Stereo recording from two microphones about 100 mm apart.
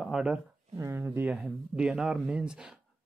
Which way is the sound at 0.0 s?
5° right (ahead or behind).